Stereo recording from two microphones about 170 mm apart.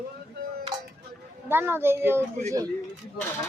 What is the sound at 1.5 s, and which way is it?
Speech, 10° right (ahead or behind).